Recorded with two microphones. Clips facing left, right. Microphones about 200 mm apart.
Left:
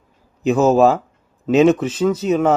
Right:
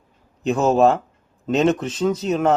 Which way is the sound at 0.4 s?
5° left (ahead or behind).